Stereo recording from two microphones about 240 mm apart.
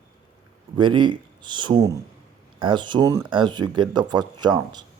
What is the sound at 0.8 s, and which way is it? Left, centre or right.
Speech, centre.